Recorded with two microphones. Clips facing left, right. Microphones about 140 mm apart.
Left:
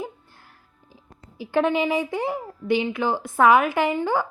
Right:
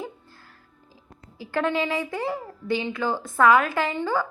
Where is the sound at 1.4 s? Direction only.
15° left (ahead or behind).